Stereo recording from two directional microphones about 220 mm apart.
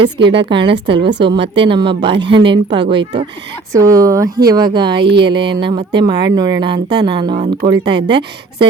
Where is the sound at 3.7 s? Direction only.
15° right (ahead or behind).